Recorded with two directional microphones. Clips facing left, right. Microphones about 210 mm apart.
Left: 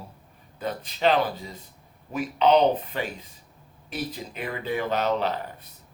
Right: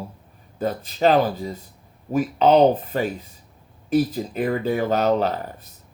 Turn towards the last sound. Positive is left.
turn(degrees=-40)  # may be behind; listen again after turning